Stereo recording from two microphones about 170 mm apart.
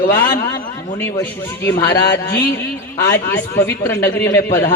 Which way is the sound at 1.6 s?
15° left (ahead or behind).